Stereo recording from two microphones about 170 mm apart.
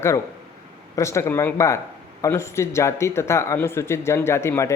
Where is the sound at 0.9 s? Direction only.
15° left (ahead or behind).